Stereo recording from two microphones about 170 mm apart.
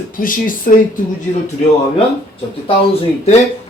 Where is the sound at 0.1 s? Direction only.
55° left (ahead or behind).